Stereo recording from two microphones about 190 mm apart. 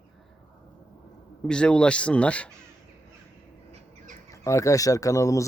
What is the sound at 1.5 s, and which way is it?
Speech, 5° left (ahead or behind).